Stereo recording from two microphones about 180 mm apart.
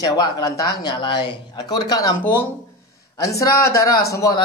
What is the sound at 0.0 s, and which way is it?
Speech, 20° left (ahead or behind).